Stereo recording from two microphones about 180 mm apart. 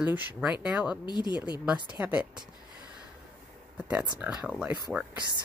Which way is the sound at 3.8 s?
5° right (ahead or behind).